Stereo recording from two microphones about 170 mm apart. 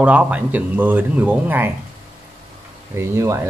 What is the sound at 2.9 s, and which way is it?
Speech, 15° right (ahead or behind).